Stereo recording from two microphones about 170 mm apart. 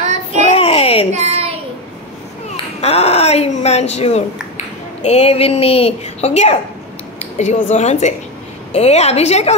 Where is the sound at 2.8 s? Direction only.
35° left (ahead or behind).